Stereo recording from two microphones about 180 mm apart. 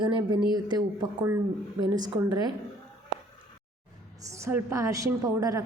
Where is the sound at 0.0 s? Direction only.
25° right (ahead or behind).